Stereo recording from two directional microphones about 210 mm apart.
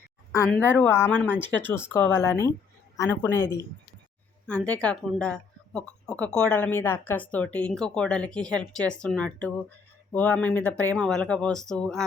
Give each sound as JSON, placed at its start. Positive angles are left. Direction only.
{"t": 0.3, "sound": "speech", "side_deg": 10}